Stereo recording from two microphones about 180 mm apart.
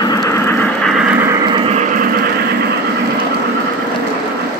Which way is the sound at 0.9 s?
5° right (ahead or behind).